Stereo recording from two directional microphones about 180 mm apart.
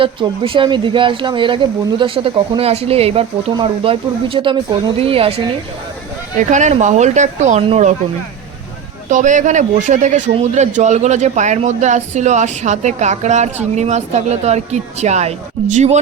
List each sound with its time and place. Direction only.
0.0 s speech: 30° right (ahead or behind)
6.5 s speech: 40° right (ahead or behind)
9.0 s speech: 45° right (ahead or behind)